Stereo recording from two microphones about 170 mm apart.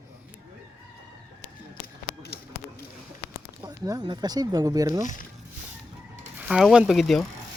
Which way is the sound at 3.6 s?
25° right (ahead or behind).